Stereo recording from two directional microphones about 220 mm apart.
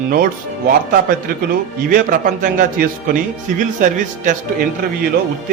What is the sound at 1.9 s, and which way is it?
A man's voice, 40° right (ahead or behind).